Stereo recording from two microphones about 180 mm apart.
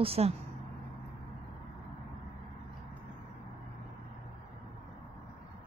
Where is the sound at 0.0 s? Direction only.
35° right (ahead or behind).